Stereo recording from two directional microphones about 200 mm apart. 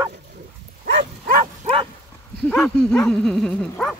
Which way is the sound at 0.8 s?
50° right (ahead or behind).